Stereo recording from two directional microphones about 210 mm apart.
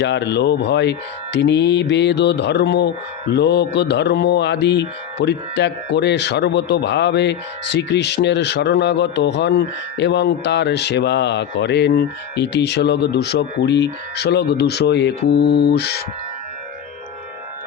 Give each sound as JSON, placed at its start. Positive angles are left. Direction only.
{"t": 0.0, "sound": "speech", "side_deg": 55}